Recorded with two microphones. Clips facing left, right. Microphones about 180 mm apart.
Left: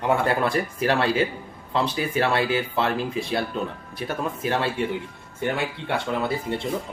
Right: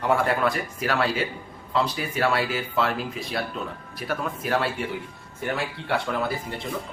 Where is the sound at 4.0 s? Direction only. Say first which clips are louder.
Left 2 dB; 25° left (ahead or behind).